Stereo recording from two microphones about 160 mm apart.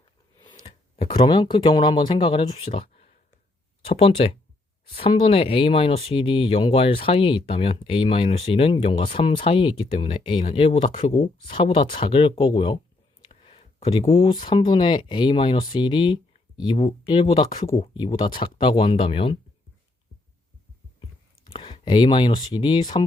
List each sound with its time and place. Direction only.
0.3 s speech: 25° left (ahead or behind)
21.5 s speech: 30° left (ahead or behind)